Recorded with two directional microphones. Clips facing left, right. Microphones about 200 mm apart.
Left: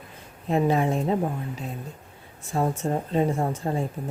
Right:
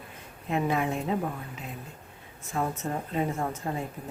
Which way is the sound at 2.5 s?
30° left (ahead or behind).